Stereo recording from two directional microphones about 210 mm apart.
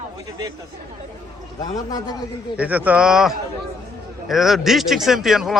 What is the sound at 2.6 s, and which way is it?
A man's voice, 5° right (ahead or behind).